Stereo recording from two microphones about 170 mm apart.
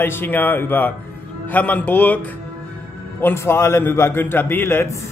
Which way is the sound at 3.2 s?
15° left (ahead or behind).